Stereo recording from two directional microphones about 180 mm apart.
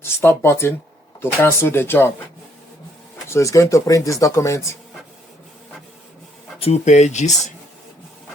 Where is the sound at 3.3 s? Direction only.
15° left (ahead or behind).